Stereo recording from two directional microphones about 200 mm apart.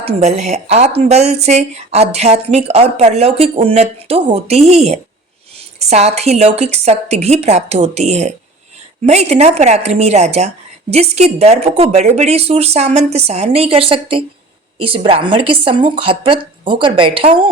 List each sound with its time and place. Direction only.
0.2 s a woman's voice: 35° right (ahead or behind)